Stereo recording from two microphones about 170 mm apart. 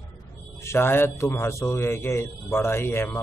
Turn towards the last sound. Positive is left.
turn(degrees=15)  # may be behind; listen again after turning